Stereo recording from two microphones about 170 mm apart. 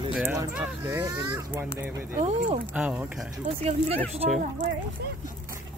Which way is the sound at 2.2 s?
40° right (ahead or behind).